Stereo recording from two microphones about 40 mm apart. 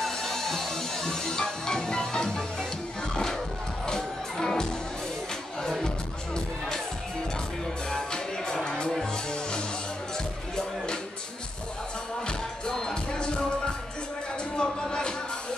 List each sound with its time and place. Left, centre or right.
0.0 s music: centre
7.9 s music: centre
12.7 s music: centre